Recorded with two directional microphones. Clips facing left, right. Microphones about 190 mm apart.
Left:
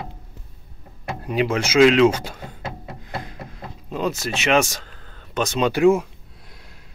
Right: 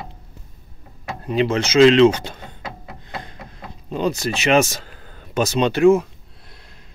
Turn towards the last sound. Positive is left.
turn(degrees=15)  # may be behind; listen again after turning